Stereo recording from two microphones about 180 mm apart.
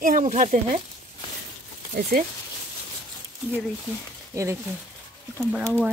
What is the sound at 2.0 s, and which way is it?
Speech, 55° right (ahead or behind).